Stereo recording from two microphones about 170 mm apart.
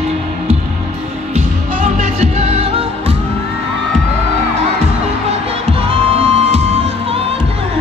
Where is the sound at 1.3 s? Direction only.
40° right (ahead or behind).